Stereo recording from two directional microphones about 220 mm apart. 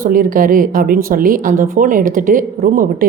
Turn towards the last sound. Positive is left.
turn(degrees=-40)  # may be behind; listen again after turning